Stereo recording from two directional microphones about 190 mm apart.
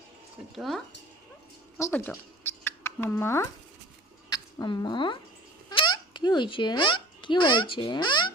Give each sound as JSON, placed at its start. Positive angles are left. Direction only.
{"t": 0.5, "sound": "speech", "side_deg": 0}
{"t": 1.8, "sound": "a child's voice", "side_deg": 10}